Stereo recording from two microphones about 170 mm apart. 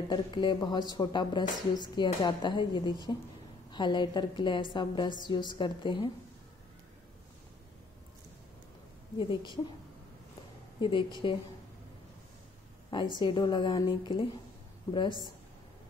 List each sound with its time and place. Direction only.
0.1 s speech: 25° left (ahead or behind)
9.2 s speech: 30° left (ahead or behind)
10.8 s a woman's voice: 30° left (ahead or behind)
12.9 s speech: 30° left (ahead or behind)